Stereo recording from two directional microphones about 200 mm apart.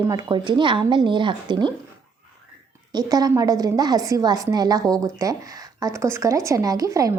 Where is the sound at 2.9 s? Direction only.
20° right (ahead or behind).